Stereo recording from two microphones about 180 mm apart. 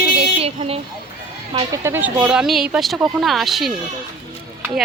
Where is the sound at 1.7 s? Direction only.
15° right (ahead or behind).